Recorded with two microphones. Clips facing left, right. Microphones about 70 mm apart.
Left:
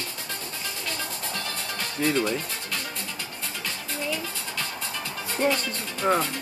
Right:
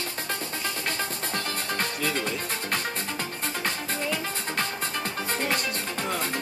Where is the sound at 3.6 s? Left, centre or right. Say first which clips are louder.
Right 1 dB; right.